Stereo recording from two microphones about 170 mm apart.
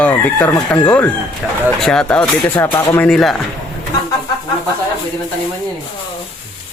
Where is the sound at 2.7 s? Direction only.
25° left (ahead or behind).